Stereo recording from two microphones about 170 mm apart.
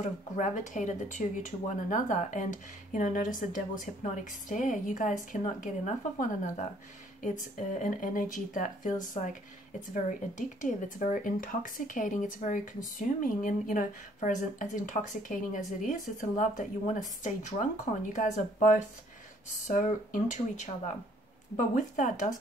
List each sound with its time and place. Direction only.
0.0 s speech: 45° left (ahead or behind)